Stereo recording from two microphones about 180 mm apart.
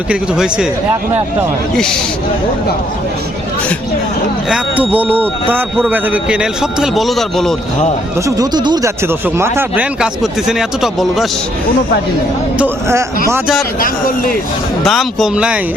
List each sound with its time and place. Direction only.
0.1 s a man's voice: 5° right (ahead or behind)
1.7 s a man's voice: 5° left (ahead or behind)
4.4 s a man's voice: 5° right (ahead or behind)
8.4 s speech: 20° right (ahead or behind); by 11.3 s centre (ahead or behind)
13.7 s a man's voice: 50° left (ahead or behind)
14.8 s a man's voice: centre (ahead or behind)